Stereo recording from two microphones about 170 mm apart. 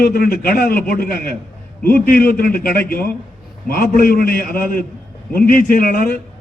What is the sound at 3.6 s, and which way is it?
A man's voice, 60° left (ahead or behind).